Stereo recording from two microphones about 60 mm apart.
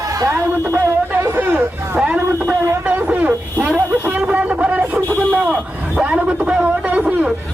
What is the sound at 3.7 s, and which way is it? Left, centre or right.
Vehicle, right.